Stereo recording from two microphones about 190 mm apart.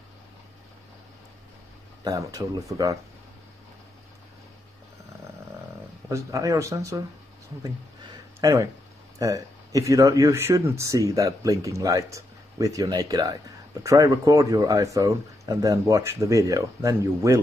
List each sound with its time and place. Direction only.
2.0 s speech: 20° right (ahead or behind)
6.0 s speech: 15° right (ahead or behind)
8.4 s speech: 15° right (ahead or behind)